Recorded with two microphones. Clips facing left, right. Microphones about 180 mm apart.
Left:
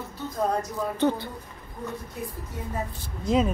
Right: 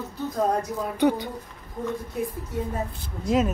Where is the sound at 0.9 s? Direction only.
15° right (ahead or behind).